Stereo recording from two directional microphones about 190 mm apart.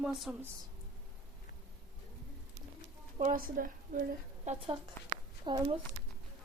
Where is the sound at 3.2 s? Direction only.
45° right (ahead or behind).